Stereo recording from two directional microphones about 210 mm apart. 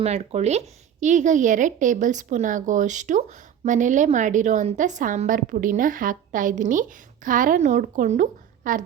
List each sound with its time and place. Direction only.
0.0 s speech: 30° right (ahead or behind)